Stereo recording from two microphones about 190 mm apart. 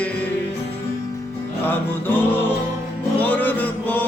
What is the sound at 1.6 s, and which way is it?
Music, 10° left (ahead or behind).